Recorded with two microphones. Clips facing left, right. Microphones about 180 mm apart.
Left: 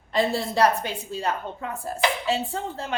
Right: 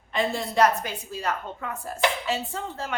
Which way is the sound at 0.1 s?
35° left (ahead or behind).